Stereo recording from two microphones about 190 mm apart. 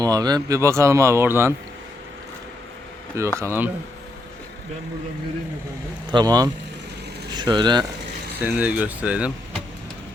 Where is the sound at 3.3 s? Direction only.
15° right (ahead or behind).